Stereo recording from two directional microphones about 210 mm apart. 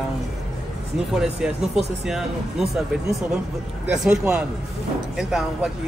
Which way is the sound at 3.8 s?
5° right (ahead or behind).